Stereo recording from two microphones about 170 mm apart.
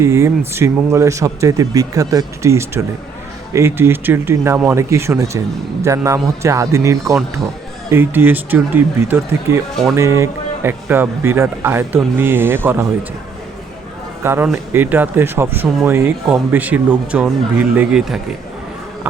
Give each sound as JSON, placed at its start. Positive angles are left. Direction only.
{"t": 0.0, "sound": "speech", "side_deg": -15}
{"t": 14.3, "sound": "speech", "side_deg": -15}